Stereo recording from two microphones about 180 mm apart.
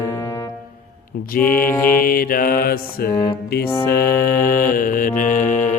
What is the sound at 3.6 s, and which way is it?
Mantra, 15° left (ahead or behind).